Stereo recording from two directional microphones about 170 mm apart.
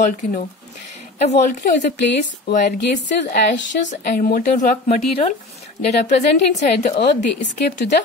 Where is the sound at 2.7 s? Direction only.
75° left (ahead or behind).